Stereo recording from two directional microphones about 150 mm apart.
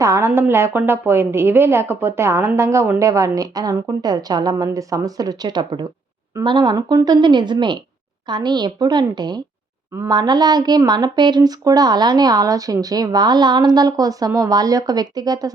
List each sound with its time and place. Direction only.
0.0 s a woman's voice: 20° right (ahead or behind)